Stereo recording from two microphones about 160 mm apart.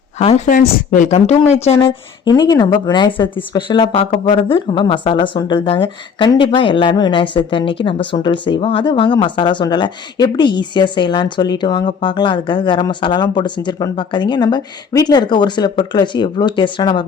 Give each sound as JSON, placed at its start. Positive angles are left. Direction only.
{"t": 0.2, "sound": "speech", "side_deg": 45}
{"t": 1.7, "sound": "speech", "side_deg": 20}